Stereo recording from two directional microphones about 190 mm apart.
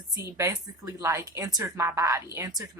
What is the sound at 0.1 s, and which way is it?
Speech, 15° right (ahead or behind).